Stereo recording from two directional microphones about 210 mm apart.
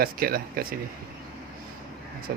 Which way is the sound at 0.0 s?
45° right (ahead or behind).